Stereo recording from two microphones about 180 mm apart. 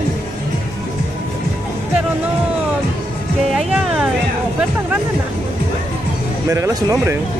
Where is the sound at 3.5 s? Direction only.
5° right (ahead or behind).